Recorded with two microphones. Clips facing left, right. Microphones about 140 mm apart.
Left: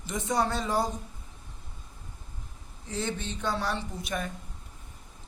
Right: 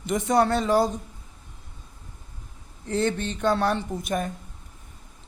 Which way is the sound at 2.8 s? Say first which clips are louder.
Right 8 dB; 60° right (ahead or behind).